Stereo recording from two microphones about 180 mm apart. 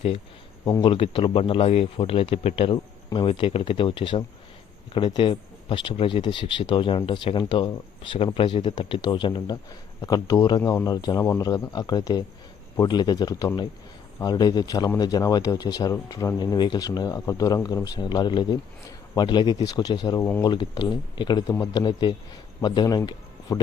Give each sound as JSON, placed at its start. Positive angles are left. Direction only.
{"t": 0.6, "sound": "speech", "side_deg": 25}
{"t": 20.2, "sound": "speech", "side_deg": 10}
{"t": 20.5, "sound": "speech", "side_deg": 25}